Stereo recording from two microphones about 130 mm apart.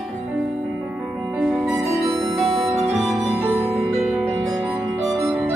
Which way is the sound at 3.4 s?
15° right (ahead or behind).